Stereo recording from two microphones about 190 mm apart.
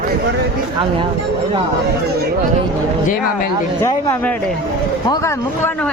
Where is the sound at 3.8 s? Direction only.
20° left (ahead or behind).